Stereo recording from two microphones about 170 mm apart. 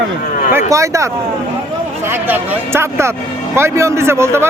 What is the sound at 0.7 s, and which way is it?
Speech, 20° right (ahead or behind).